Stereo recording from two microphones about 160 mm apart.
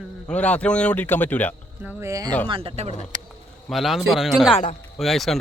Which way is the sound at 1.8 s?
15° right (ahead or behind).